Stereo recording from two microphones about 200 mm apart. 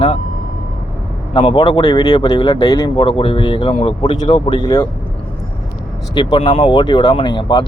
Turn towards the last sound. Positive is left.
turn(degrees=20)  # may be behind; listen again after turning